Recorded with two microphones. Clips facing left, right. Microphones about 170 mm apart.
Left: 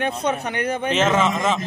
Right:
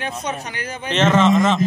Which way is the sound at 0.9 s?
5° left (ahead or behind).